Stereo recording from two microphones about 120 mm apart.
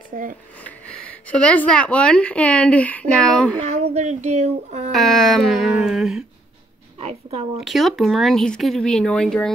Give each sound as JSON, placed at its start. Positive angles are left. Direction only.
{"t": 0.1, "sound": "speech", "side_deg": -90}
{"t": 1.2, "sound": "speech", "side_deg": 10}
{"t": 3.6, "sound": "child singing", "side_deg": -65}
{"t": 4.9, "sound": "speech", "side_deg": 0}
{"t": 7.0, "sound": "a sound", "side_deg": -60}
{"t": 7.6, "sound": "speech", "side_deg": 0}